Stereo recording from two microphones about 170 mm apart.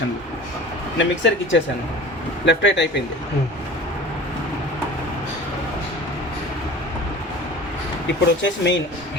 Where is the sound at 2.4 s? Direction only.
90° left.